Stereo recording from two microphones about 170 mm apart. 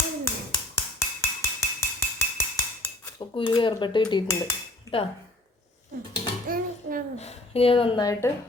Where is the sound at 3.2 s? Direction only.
30° left (ahead or behind).